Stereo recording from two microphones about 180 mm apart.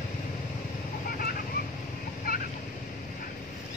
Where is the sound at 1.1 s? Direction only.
55° left (ahead or behind).